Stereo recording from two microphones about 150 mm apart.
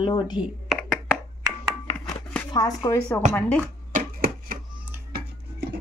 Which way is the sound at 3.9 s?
65° right (ahead or behind).